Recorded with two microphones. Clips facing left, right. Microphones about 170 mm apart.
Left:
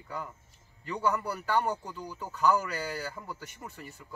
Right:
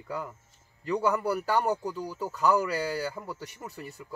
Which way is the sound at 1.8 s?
35° right (ahead or behind).